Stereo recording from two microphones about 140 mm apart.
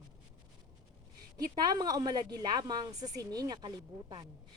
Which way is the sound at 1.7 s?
25° right (ahead or behind).